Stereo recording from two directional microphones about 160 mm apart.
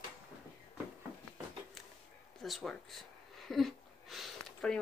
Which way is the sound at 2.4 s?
Centre (ahead or behind).